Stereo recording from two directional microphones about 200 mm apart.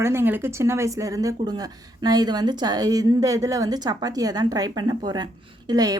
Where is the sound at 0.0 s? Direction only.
10° right (ahead or behind).